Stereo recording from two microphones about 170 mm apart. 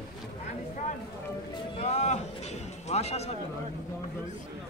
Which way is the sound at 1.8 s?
40° left (ahead or behind).